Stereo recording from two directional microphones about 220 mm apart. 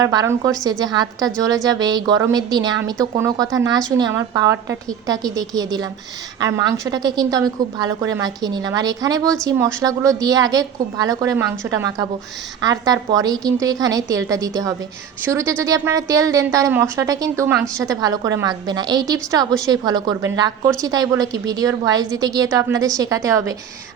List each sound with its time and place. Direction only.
0.0 s a woman's voice: 15° right (ahead or behind)